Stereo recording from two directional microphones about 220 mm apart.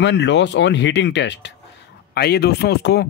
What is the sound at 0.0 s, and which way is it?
Speech, 55° left (ahead or behind).